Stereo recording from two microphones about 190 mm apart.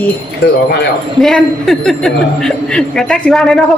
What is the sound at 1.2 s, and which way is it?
A woman's voice, centre (ahead or behind).